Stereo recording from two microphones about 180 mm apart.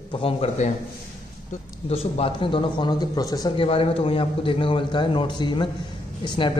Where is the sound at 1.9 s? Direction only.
35° left (ahead or behind).